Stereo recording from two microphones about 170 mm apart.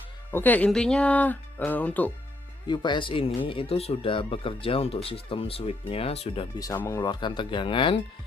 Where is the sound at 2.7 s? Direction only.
25° left (ahead or behind).